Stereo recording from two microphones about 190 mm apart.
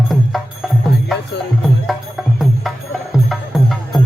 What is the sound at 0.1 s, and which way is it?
Music, centre (ahead or behind).